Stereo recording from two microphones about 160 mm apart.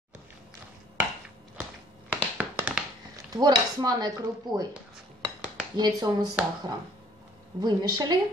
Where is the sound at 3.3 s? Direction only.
25° right (ahead or behind).